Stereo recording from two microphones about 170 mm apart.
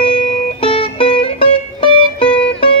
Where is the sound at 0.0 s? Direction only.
30° left (ahead or behind).